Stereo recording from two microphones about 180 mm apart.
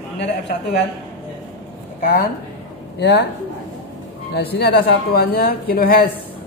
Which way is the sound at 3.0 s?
65° left (ahead or behind).